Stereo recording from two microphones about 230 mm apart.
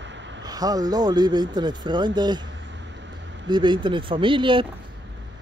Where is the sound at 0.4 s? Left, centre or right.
Centre.